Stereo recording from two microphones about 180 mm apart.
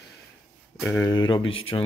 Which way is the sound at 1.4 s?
90° left.